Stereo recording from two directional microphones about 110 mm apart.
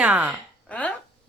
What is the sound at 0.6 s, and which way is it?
Dishes, 10° left (ahead or behind).